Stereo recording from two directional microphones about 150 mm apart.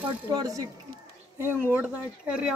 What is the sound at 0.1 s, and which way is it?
Speech, 25° right (ahead or behind).